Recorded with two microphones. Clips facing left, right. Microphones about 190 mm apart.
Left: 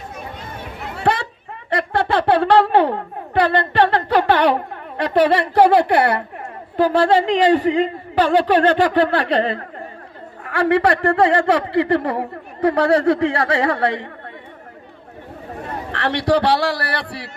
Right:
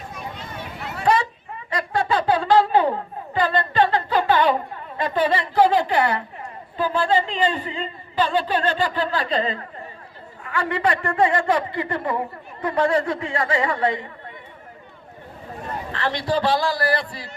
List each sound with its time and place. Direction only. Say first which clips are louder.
1.0 s a sound: even; 60° left (ahead or behind)
1.7 s a woman's voice: left 4 dB; 65° left (ahead or behind)
15.9 s a woman's voice: left 6 dB; 70° left (ahead or behind)